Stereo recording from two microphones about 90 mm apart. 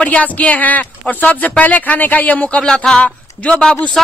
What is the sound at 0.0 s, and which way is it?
A woman's voice, 15° left (ahead or behind).